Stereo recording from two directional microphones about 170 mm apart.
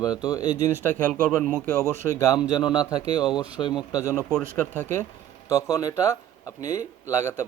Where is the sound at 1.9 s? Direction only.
20° left (ahead or behind).